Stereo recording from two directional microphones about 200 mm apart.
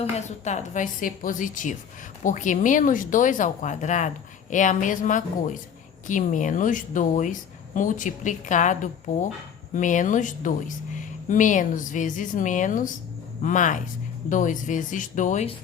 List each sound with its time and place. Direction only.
0.0 s speech: 35° left (ahead or behind)